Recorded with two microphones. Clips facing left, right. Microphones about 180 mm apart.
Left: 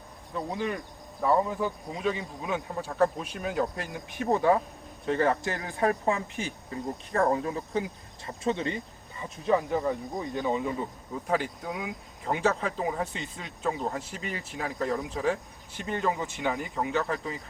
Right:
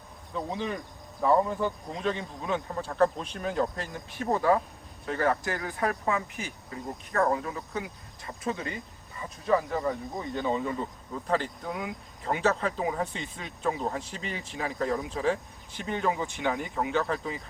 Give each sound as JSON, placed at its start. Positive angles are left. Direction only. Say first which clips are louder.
{"t": 0.3, "sound": "speech", "louder": "left 1 dB", "side_deg": 5}
{"t": 9.5, "sound": "speech", "louder": "left 1 dB", "side_deg": 15}